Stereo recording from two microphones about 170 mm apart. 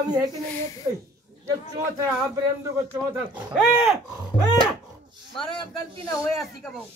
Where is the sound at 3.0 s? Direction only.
10° left (ahead or behind).